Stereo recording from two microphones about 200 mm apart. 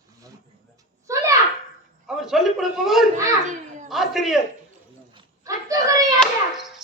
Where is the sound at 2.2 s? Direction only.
Centre (ahead or behind).